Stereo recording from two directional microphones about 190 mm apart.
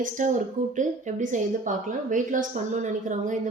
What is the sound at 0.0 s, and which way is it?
A woman's voice, 40° right (ahead or behind).